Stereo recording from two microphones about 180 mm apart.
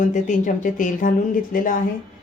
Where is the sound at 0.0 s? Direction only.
45° left (ahead or behind).